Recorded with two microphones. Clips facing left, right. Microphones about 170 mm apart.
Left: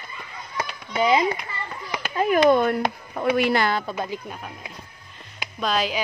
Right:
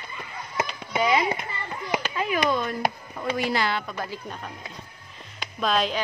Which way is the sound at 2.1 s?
55° left (ahead or behind).